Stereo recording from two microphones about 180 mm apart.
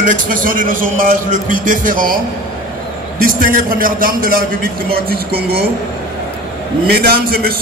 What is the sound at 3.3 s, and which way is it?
A man's voice, 50° right (ahead or behind).